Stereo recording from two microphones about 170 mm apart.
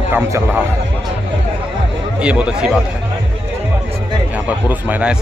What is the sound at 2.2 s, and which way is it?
Speech, 5° right (ahead or behind).